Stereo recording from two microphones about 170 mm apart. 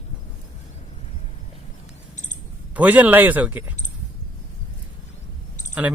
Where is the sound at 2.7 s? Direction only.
10° right (ahead or behind).